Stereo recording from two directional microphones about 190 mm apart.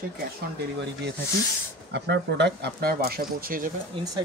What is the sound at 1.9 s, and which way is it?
Speech, 65° right (ahead or behind).